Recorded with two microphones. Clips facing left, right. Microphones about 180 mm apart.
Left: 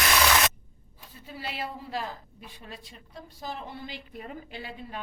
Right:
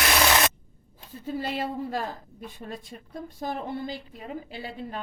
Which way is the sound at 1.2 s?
45° right (ahead or behind).